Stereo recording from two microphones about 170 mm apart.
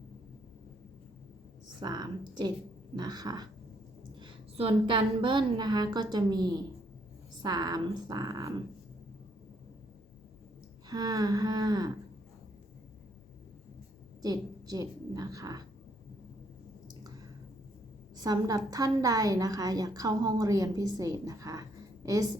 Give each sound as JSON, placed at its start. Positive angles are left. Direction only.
{"t": 1.8, "sound": "a woman's voice", "side_deg": -25}
{"t": 10.8, "sound": "a woman's voice", "side_deg": -25}
{"t": 14.2, "sound": "a woman's voice", "side_deg": -20}
{"t": 18.2, "sound": "a woman's voice", "side_deg": -20}